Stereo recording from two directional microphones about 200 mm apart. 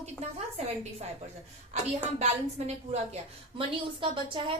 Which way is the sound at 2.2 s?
35° right (ahead or behind).